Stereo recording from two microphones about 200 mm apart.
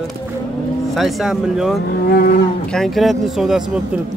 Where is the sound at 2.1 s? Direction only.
45° left (ahead or behind).